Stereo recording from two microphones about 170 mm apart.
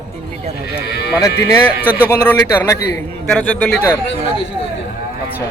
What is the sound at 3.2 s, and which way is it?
Speech, 5° left (ahead or behind).